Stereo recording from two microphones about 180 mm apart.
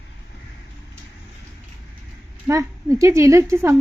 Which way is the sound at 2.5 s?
15° right (ahead or behind).